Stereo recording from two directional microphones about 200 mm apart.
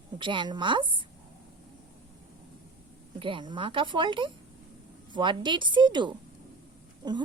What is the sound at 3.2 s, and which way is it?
A woman's voice, 25° right (ahead or behind).